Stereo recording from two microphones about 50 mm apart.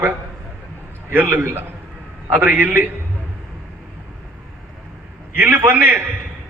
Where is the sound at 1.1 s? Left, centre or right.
Right.